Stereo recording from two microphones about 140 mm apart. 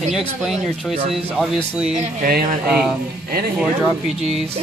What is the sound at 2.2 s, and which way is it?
Speech, 90° right.